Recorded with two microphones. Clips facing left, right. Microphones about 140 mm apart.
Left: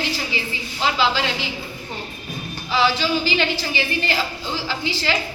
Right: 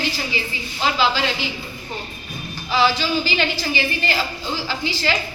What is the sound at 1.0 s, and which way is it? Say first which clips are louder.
Speech: right 1 dB; 25° left (ahead or behind).